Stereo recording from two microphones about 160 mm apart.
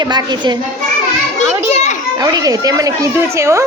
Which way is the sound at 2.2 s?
20° right (ahead or behind).